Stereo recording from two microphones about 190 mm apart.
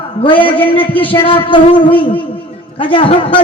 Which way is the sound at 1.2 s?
25° left (ahead or behind).